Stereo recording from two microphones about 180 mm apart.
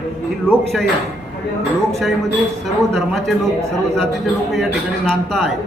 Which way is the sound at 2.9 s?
Centre (ahead or behind).